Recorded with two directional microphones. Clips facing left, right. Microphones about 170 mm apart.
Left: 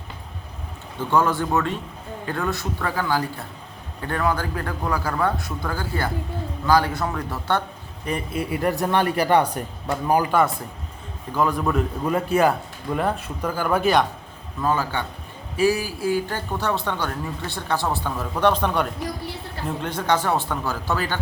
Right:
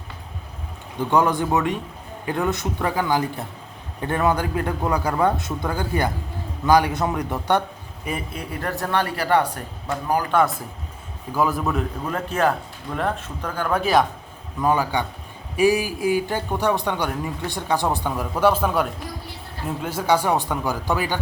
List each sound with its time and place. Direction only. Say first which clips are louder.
0.9 s a man's voice: right 1 dB; 15° right (ahead or behind)
8.0 s a man's voice: left 3 dB; centre (ahead or behind); by 10.3 s 20° left (ahead or behind)
10.3 s speech: even; centre (ahead or behind)
12.0 s speech: left 3 dB; 10° left (ahead or behind)
14.6 s speech: right 3 dB; 15° right (ahead or behind)